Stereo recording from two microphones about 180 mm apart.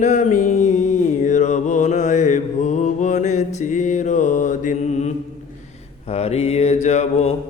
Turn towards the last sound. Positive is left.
turn(degrees=40)  # may be behind; listen again after turning